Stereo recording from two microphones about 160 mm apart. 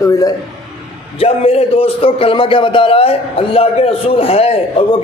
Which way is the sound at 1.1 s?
35° left (ahead or behind).